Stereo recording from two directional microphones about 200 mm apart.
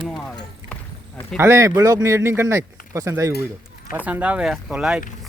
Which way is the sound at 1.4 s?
15° right (ahead or behind).